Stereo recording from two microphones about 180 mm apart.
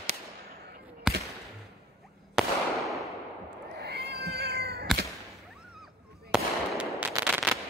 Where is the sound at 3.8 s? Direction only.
65° right (ahead or behind).